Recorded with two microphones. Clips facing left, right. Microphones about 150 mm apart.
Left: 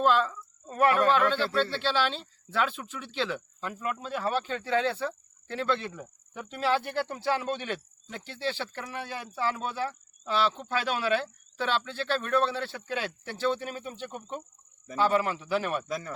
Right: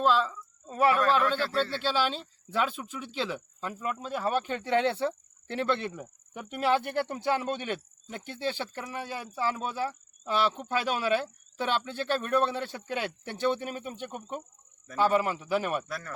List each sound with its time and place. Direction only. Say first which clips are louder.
0.0 s speech: left 1 dB; centre (ahead or behind); by 6.0 s 25° right (ahead or behind)
6.0 s speech: even; 15° right (ahead or behind)
15.9 s speech: left 4 dB; 15° left (ahead or behind)